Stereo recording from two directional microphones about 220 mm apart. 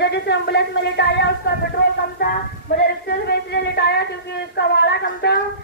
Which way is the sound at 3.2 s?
50° left (ahead or behind).